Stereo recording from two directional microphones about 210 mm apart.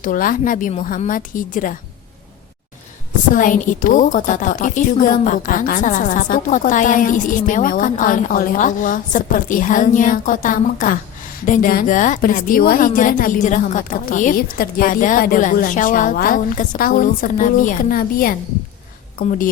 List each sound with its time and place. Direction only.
0.0 s a woman's voice: 40° left (ahead or behind)
3.3 s a woman's voice: 40° left (ahead or behind)